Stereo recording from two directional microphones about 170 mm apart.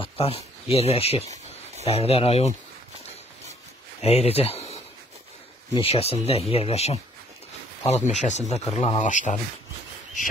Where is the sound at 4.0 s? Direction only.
35° left (ahead or behind).